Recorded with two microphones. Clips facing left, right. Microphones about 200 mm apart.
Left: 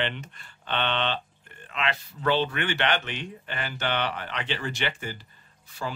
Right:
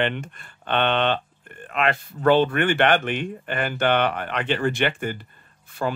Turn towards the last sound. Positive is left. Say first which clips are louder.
# right 8 dB
turn(degrees=-55)  # may be behind; listen again after turning